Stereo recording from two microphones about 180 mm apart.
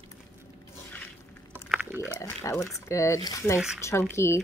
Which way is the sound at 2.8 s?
15° left (ahead or behind).